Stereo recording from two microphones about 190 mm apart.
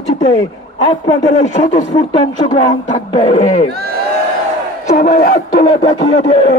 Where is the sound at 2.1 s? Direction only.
25° left (ahead or behind).